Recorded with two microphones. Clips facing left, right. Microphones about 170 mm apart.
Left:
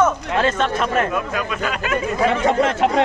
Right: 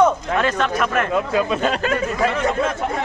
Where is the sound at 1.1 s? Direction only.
25° right (ahead or behind).